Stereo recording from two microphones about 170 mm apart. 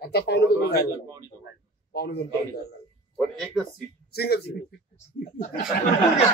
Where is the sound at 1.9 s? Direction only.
70° left (ahead or behind).